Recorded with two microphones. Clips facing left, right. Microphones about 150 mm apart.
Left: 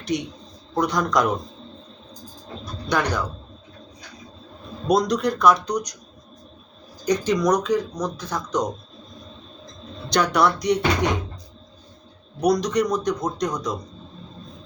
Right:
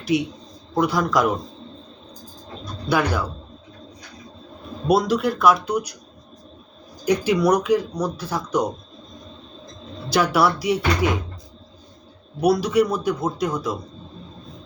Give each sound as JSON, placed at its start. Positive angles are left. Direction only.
{"t": 0.0, "sound": "a man's voice", "side_deg": -5}
{"t": 2.9, "sound": "speech", "side_deg": -5}
{"t": 4.9, "sound": "a man's voice", "side_deg": -5}
{"t": 7.0, "sound": "speech", "side_deg": -10}
{"t": 10.1, "sound": "a man's voice", "side_deg": -5}
{"t": 12.4, "sound": "a man's voice", "side_deg": -5}